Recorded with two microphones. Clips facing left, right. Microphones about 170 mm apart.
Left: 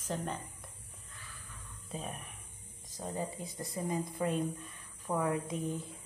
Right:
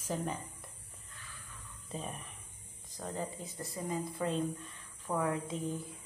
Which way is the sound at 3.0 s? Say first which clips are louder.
Left 1 dB; 15° left (ahead or behind).